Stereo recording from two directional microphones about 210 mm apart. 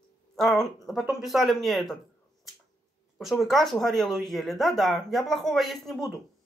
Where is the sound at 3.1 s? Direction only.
Centre (ahead or behind).